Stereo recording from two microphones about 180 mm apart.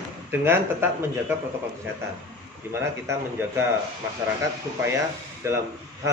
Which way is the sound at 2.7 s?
15° right (ahead or behind).